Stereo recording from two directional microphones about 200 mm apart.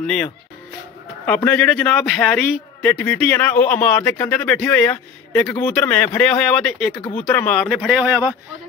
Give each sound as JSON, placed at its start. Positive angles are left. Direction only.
{"t": 0.0, "sound": "a man's voice", "side_deg": 5}
{"t": 7.0, "sound": "speech", "side_deg": 30}
{"t": 7.2, "sound": "speech", "side_deg": 5}